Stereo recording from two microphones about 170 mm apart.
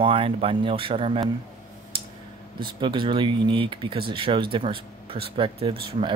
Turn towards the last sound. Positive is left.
turn(degrees=-30)  # may be behind; listen again after turning